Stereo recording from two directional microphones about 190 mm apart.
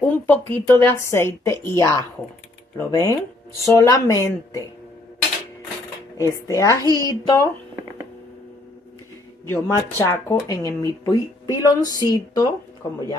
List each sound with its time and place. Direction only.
0.3 s speech: 10° left (ahead or behind)
6.1 s speech: 15° left (ahead or behind)
9.5 s a woman's voice: 15° left (ahead or behind)